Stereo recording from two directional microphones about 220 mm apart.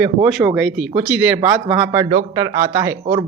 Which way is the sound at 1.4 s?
20° right (ahead or behind).